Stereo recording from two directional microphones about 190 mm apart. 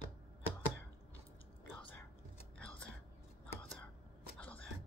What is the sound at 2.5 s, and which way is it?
Whispering, 5° left (ahead or behind).